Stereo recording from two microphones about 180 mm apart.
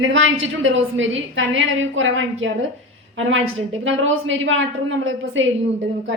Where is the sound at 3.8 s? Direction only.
90° right.